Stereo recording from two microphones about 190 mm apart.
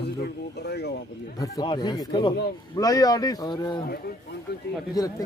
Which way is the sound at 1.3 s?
20° left (ahead or behind).